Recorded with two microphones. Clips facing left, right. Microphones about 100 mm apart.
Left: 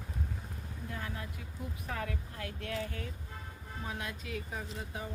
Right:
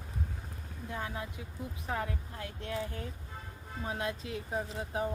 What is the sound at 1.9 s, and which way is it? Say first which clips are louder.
Speech: right 4 dB; 25° right (ahead or behind).